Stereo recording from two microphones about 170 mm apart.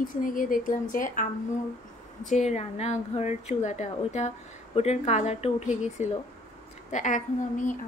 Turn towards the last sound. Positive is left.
turn(degrees=50)  # may be behind; listen again after turning